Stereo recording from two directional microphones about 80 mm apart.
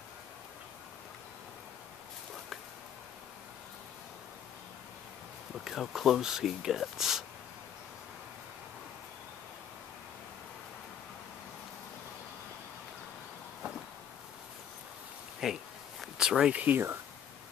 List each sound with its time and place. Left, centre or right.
5.6 s speech: centre
15.4 s a sound: centre
16.6 s speech: right